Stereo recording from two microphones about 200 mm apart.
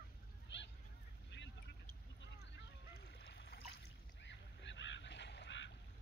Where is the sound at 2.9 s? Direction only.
55° left (ahead or behind).